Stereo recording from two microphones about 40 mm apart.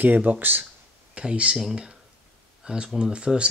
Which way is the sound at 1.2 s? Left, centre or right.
Right.